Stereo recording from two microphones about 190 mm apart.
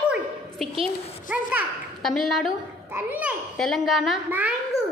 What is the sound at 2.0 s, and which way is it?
Speech, centre (ahead or behind).